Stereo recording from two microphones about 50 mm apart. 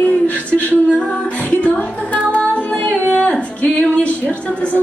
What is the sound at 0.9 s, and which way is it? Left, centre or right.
Music, left.